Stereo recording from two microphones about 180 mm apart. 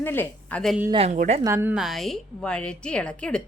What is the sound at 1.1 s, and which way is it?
Speech, 45° right (ahead or behind).